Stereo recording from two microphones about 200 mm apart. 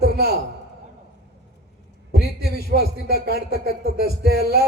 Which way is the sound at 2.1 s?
50° right (ahead or behind).